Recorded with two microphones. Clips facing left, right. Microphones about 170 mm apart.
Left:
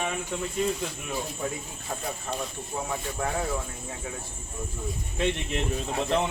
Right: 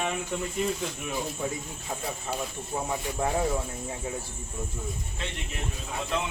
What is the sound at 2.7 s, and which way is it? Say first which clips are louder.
Speech: right 1 dB; 10° right (ahead or behind).